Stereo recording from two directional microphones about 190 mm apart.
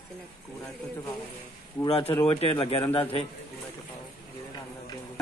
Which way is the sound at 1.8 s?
30° left (ahead or behind).